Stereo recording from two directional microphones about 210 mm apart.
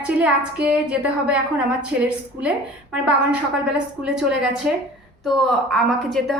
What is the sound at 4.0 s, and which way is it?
A woman's voice, 5° right (ahead or behind).